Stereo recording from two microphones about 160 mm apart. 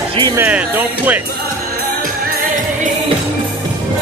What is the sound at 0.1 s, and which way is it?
Speech, 30° right (ahead or behind).